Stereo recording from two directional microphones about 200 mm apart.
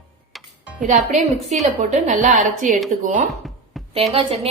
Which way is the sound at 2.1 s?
40° right (ahead or behind).